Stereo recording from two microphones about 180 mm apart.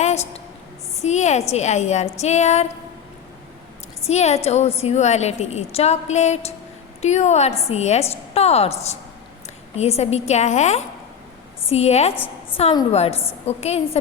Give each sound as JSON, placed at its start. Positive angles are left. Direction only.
{"t": 0.0, "sound": "a sound", "side_deg": 35}
{"t": 1.0, "sound": "a woman's voice", "side_deg": 40}
{"t": 4.0, "sound": "a woman's voice", "side_deg": 40}
{"t": 12.1, "sound": "a woman's voice", "side_deg": 10}
{"t": 12.9, "sound": "a woman's voice", "side_deg": 35}